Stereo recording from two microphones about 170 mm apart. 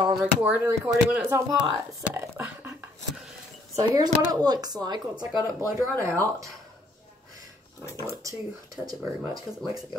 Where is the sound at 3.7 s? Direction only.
20° right (ahead or behind).